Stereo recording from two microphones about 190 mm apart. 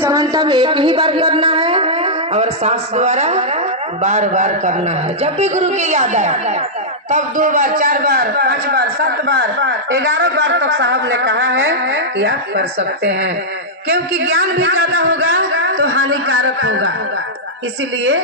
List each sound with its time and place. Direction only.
0.0 s a man's voice: 15° right (ahead or behind); by 13.3 s 55° right (ahead or behind)
14.3 s a man's voice: 90° right